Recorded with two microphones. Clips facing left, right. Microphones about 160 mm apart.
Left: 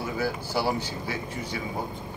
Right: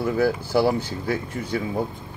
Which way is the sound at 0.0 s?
55° right (ahead or behind).